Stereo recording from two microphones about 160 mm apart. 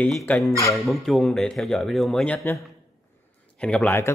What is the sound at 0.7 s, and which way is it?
Speech, centre (ahead or behind).